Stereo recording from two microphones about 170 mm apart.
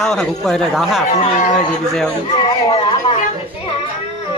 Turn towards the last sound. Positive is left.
turn(degrees=30)  # may be behind; listen again after turning